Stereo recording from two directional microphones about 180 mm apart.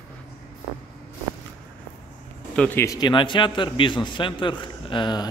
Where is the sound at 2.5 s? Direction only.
10° left (ahead or behind).